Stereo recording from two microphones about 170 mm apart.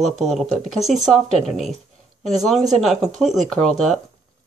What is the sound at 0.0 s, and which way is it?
Speech, centre (ahead or behind).